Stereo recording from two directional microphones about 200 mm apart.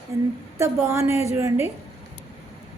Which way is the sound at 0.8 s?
15° right (ahead or behind).